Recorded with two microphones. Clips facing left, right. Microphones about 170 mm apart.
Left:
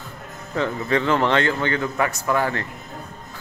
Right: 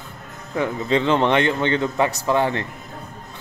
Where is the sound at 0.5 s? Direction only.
15° right (ahead or behind).